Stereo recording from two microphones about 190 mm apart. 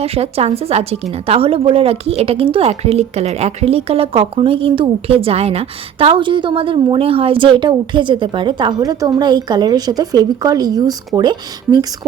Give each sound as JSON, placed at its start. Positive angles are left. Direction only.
{"t": 0.0, "sound": "a woman's voice", "side_deg": -30}